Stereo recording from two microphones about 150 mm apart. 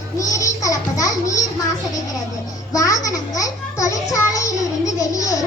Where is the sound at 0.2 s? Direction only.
20° left (ahead or behind).